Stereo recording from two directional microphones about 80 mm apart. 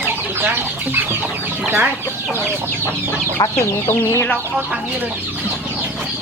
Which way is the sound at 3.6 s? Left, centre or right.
Left.